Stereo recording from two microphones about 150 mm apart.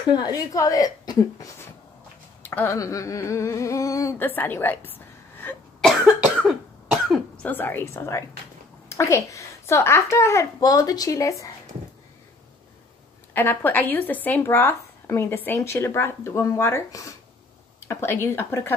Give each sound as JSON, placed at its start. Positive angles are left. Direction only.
{"t": 0.0, "sound": "humming", "side_deg": 25}
{"t": 2.4, "sound": "humming", "side_deg": 15}
{"t": 5.8, "sound": "cough", "side_deg": 0}
{"t": 7.4, "sound": "speech", "side_deg": 10}
{"t": 8.8, "sound": "humming", "side_deg": 20}
{"t": 13.3, "sound": "speech", "side_deg": 15}